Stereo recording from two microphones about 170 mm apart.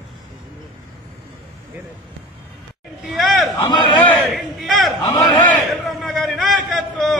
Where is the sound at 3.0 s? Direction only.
Centre (ahead or behind).